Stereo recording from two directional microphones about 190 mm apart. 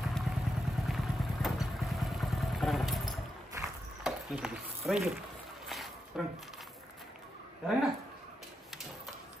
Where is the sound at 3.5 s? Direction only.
15° right (ahead or behind).